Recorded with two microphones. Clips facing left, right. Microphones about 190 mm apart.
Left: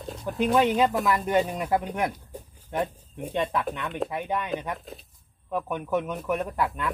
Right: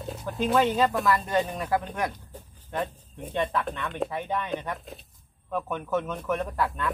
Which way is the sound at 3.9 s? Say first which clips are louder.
Even; 5° left (ahead or behind).